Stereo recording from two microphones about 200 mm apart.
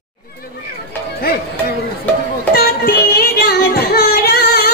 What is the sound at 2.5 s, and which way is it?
Music, 50° left (ahead or behind).